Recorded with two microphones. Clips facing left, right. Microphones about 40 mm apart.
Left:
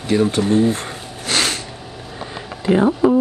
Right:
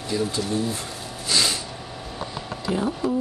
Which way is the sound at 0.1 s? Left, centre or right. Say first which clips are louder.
Left 9 dB; left.